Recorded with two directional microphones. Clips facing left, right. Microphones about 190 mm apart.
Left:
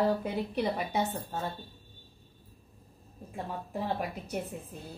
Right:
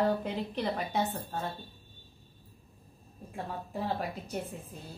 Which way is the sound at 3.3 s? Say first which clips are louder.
Left 1 dB; 10° left (ahead or behind).